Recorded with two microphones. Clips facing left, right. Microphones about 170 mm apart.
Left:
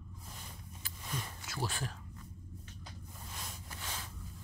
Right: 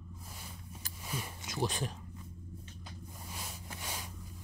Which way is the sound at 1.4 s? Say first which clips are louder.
Right 7 dB; 20° right (ahead or behind).